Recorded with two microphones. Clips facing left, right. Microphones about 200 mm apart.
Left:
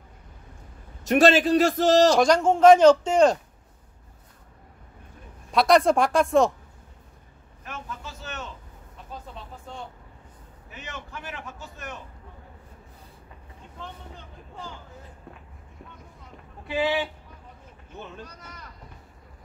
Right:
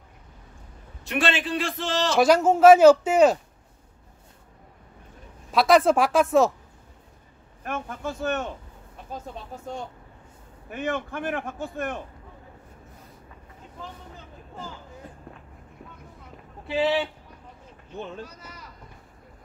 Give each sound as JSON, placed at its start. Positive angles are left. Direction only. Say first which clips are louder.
{"t": 1.0, "sound": "a man's voice", "louder": "left 8 dB", "side_deg": 40}
{"t": 2.1, "sound": "speech", "louder": "right 1 dB", "side_deg": -5}
{"t": 5.5, "sound": "speech", "louder": "even", "side_deg": 0}
{"t": 7.6, "sound": "a man's voice", "louder": "right 7 dB", "side_deg": -55}
{"t": 10.7, "sound": "a man's voice", "louder": "right 11 dB", "side_deg": -55}
{"t": 13.7, "sound": "speech", "louder": "even", "side_deg": -5}
{"t": 16.6, "sound": "a man's voice", "louder": "right 2 dB", "side_deg": -30}
{"t": 18.2, "sound": "speech", "louder": "right 2 dB", "side_deg": -5}